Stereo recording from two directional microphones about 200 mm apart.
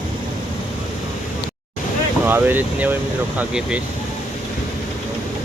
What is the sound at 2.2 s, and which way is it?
Speech, 10° right (ahead or behind).